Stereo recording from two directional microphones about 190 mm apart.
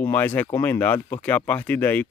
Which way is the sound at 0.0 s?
10° left (ahead or behind).